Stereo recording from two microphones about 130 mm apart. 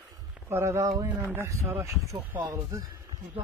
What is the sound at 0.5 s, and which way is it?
Speech, 20° right (ahead or behind).